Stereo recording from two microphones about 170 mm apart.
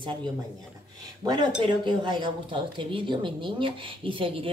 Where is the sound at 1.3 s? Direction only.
25° right (ahead or behind).